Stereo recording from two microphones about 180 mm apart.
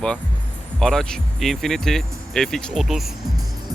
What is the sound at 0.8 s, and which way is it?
Speech, centre (ahead or behind).